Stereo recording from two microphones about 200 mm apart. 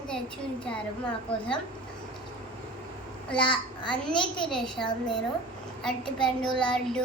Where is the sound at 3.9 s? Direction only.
5° left (ahead or behind).